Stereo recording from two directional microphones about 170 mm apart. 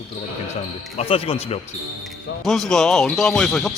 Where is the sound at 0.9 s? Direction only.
35° left (ahead or behind).